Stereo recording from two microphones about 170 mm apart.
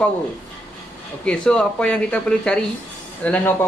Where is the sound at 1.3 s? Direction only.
5° left (ahead or behind).